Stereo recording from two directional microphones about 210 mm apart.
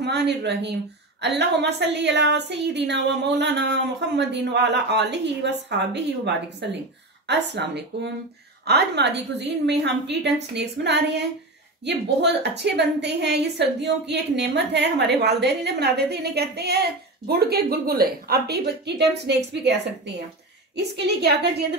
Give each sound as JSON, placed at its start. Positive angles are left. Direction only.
{"t": 0.0, "sound": "a woman's voice", "side_deg": -55}